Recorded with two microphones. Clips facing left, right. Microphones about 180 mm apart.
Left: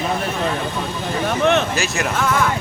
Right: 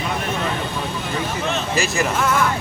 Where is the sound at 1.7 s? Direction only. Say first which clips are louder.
Right 2 dB; centre (ahead or behind).